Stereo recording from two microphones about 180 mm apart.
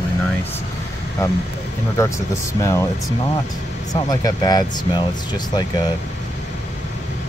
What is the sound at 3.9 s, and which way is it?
Speech, 20° left (ahead or behind).